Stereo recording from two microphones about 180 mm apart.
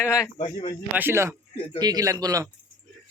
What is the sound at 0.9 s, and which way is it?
Speech, 15° right (ahead or behind).